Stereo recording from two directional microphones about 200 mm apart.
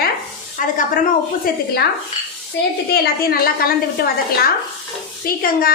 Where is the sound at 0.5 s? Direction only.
40° left (ahead or behind).